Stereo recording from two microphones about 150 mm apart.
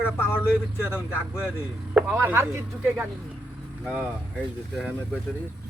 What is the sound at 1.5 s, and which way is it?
Speech, 5° right (ahead or behind).